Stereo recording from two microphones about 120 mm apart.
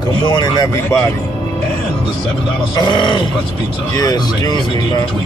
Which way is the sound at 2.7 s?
40° left (ahead or behind).